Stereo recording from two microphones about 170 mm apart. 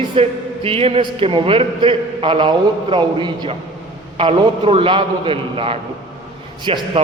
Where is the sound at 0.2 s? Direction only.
35° right (ahead or behind).